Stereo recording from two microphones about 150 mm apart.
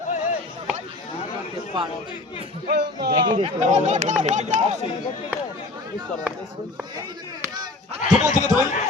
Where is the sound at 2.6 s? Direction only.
90° right.